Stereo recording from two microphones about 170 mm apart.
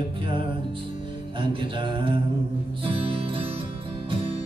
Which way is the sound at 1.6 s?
30° right (ahead or behind).